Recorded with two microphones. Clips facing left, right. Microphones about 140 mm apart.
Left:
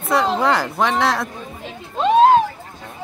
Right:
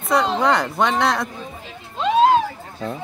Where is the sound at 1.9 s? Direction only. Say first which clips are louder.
Left 3 dB; 50° left (ahead or behind).